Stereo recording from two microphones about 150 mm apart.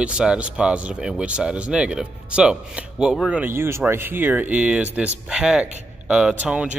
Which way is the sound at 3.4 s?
15° right (ahead or behind).